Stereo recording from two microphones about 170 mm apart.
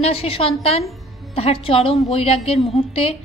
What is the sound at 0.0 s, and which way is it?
A woman's voice, 35° left (ahead or behind).